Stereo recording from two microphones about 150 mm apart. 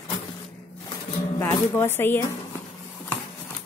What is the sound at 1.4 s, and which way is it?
Speech, 15° left (ahead or behind).